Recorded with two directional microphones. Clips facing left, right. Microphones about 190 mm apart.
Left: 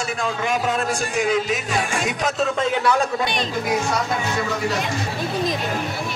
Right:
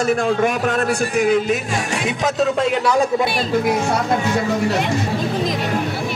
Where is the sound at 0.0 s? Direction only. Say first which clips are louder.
Right 8 dB; 55° right (ahead or behind).